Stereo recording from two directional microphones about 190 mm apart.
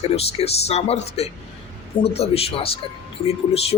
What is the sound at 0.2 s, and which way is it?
Speech, 30° left (ahead or behind).